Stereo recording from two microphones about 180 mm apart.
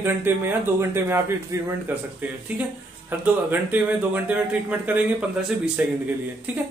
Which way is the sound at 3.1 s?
10° right (ahead or behind).